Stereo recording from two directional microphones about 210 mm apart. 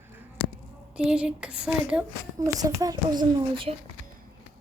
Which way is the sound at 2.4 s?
15° right (ahead or behind).